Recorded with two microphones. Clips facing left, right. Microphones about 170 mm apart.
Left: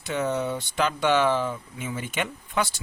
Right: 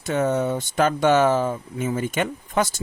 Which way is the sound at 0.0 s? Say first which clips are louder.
Right 5 dB; 50° right (ahead or behind).